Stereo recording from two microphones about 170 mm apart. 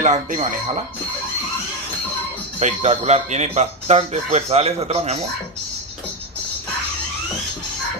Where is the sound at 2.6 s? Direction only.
40° right (ahead or behind).